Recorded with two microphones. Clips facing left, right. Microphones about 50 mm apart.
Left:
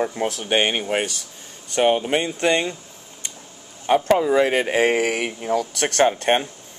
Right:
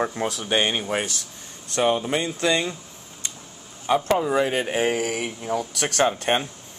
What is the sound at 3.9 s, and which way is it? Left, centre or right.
Speech, left.